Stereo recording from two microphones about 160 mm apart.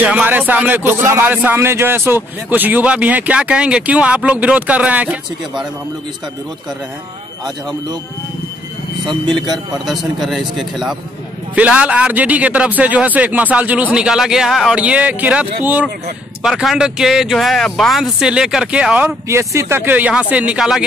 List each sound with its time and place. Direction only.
0.0 s speech: 10° right (ahead or behind)
9.3 s speech: centre (ahead or behind)
19.2 s speech: 20° right (ahead or behind)